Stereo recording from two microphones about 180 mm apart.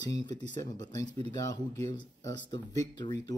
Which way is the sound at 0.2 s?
25° left (ahead or behind).